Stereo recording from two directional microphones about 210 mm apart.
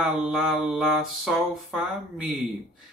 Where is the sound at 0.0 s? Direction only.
Centre (ahead or behind).